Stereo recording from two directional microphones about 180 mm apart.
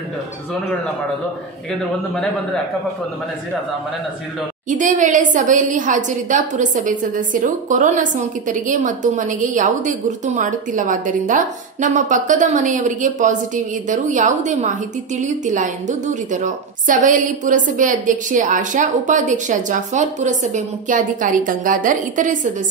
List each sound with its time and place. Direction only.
4.6 s a woman's voice: 45° right (ahead or behind)